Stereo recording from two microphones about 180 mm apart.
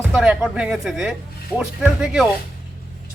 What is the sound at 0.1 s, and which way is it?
Speech, 5° right (ahead or behind).